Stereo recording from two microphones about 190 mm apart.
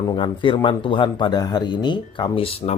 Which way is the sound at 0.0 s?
20° left (ahead or behind).